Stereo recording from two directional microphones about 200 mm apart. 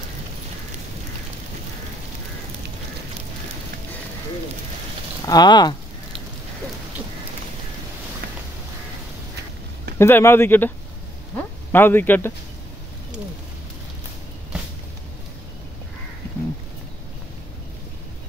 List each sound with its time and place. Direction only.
5.2 s speech: 20° left (ahead or behind)
9.9 s speech: 10° left (ahead or behind)
11.3 s a sound: 10° left (ahead or behind)